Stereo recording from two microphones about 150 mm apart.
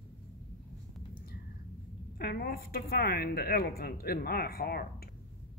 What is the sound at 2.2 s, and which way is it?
A woman's voice, 90° left.